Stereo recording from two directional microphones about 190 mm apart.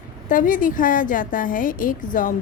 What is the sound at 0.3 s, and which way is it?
A woman's voice, 45° left (ahead or behind).